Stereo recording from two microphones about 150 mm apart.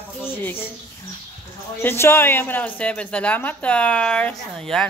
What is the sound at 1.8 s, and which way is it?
A woman's voice, 15° left (ahead or behind).